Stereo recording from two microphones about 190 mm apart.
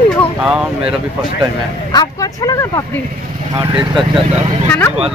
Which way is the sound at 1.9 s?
20° left (ahead or behind).